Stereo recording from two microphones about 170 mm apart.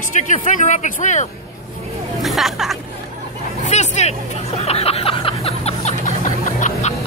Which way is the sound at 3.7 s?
40° left (ahead or behind).